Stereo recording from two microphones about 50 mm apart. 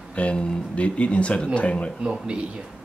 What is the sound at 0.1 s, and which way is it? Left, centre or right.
Speech, left.